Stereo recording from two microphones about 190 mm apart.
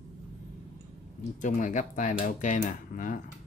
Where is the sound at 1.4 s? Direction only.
40° left (ahead or behind).